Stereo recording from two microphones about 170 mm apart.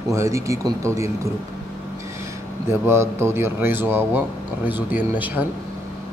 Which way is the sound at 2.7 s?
15° right (ahead or behind).